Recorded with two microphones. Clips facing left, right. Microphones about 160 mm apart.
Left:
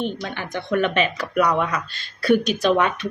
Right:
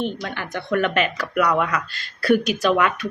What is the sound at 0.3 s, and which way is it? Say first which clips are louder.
Speech: even; 20° left (ahead or behind).